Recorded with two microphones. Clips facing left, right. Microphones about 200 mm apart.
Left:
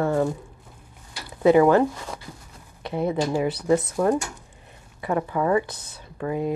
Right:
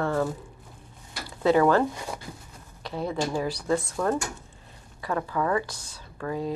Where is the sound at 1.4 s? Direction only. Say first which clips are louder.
Left 4 dB; 15° left (ahead or behind).